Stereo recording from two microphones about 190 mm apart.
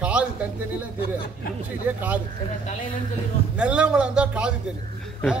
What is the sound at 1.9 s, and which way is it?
Speech, 10° right (ahead or behind).